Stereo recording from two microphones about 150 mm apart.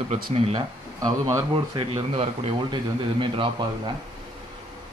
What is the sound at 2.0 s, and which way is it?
A man's voice, 40° right (ahead or behind).